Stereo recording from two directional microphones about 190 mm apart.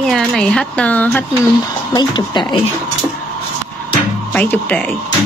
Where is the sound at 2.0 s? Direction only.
25° left (ahead or behind).